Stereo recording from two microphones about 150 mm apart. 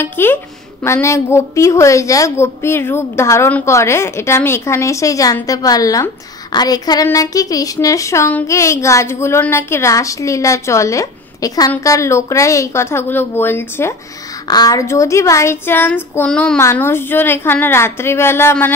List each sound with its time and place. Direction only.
0.0 s a woman's voice: 15° left (ahead or behind)